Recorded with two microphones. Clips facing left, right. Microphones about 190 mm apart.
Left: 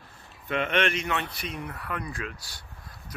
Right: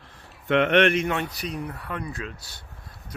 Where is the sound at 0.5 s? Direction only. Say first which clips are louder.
Right 7 dB; 70° right (ahead or behind); by 1.2 s 55° right (ahead or behind).